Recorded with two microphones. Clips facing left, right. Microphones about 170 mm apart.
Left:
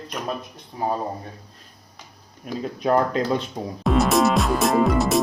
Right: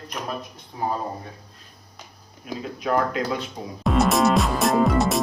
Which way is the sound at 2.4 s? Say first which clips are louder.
Left 4 dB; 40° left (ahead or behind).